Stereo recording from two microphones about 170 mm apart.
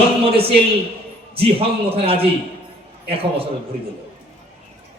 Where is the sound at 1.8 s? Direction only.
35° right (ahead or behind).